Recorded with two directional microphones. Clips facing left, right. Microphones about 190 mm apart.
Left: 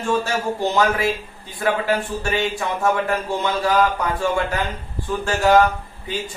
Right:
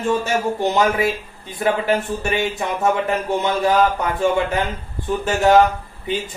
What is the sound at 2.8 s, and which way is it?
Speech, 20° right (ahead or behind).